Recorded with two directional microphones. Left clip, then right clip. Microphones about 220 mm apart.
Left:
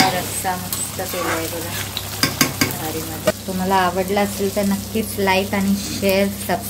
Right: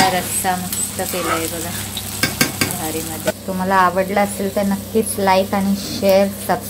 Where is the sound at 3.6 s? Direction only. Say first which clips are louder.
Right 3 dB; 5° right (ahead or behind).